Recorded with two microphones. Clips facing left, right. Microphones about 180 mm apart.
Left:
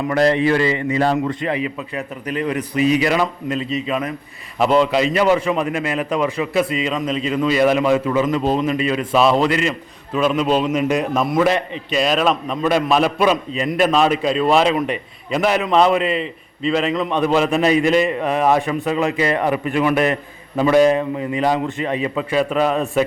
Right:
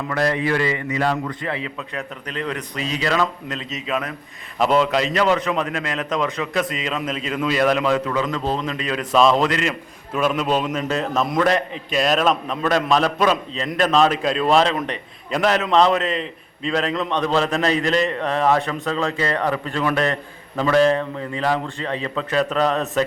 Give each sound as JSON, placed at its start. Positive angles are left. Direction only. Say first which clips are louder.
{"t": 0.1, "sound": "a man's voice", "louder": "left 5 dB", "side_deg": 20}
{"t": 8.2, "sound": "a man's voice", "louder": "left 5 dB", "side_deg": 15}
{"t": 10.8, "sound": "a man's voice", "louder": "left 4 dB", "side_deg": 15}